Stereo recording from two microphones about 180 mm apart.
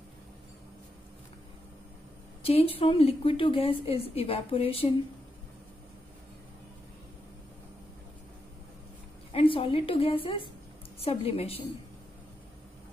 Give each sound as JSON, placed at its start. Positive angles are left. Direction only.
{"t": 2.4, "sound": "a woman's voice", "side_deg": 30}
{"t": 9.3, "sound": "a woman's voice", "side_deg": 30}